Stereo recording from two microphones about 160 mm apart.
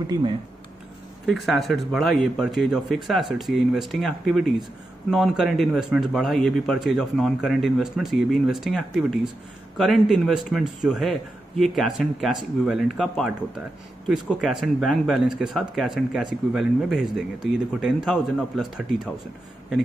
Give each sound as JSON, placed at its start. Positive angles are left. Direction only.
{"t": 0.0, "sound": "speech", "side_deg": -30}
{"t": 1.2, "sound": "speech", "side_deg": 0}